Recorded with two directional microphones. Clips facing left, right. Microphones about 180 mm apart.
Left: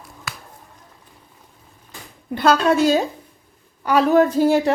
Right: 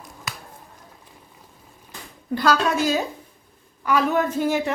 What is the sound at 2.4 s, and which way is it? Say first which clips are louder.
A woman's voice: left 5 dB; 30° left (ahead or behind).